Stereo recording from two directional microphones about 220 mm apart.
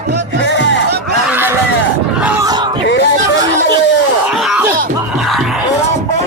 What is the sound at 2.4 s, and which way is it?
Screaming, 20° right (ahead or behind).